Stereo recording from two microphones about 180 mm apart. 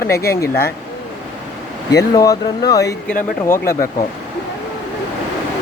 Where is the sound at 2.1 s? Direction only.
20° left (ahead or behind).